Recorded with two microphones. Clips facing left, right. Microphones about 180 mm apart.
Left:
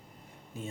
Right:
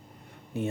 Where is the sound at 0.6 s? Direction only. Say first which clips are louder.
Right 10 dB; 70° right (ahead or behind).